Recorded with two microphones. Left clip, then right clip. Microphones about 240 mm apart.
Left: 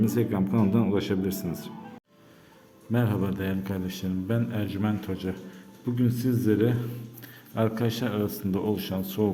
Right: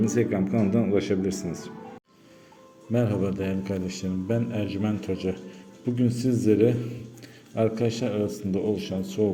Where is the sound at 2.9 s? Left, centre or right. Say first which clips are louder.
Right 3 dB; centre.